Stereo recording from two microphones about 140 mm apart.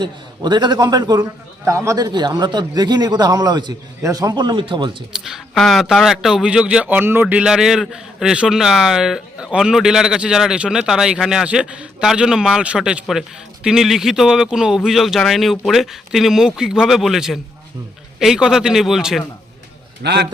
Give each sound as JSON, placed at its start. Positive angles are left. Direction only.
{"t": 0.0, "sound": "a man's voice", "side_deg": -30}
{"t": 5.1, "sound": "speech", "side_deg": -5}